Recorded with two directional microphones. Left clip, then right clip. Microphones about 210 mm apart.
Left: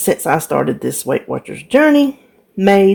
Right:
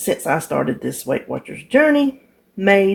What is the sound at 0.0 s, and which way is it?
Speech, 45° left (ahead or behind).